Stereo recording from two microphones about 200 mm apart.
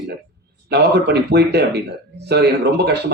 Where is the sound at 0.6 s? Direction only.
55° right (ahead or behind).